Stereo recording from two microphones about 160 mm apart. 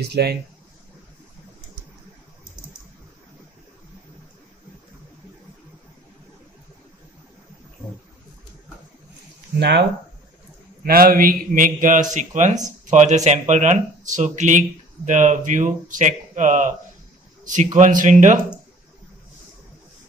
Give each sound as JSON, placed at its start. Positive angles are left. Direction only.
{"t": 0.0, "sound": "speech", "side_deg": -85}
{"t": 9.6, "sound": "speech", "side_deg": -90}
{"t": 10.8, "sound": "a man's voice", "side_deg": -65}
{"t": 17.7, "sound": "speech", "side_deg": -50}